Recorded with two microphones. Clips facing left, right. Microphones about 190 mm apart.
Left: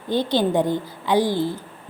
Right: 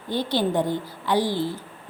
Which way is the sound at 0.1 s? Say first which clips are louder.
Left 3 dB; 15° left (ahead or behind).